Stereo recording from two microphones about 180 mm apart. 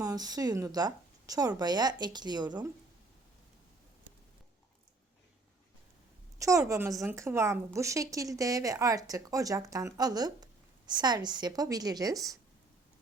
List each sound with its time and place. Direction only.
0.0 s a woman's voice: 20° right (ahead or behind)
6.4 s a woman's voice: 15° right (ahead or behind)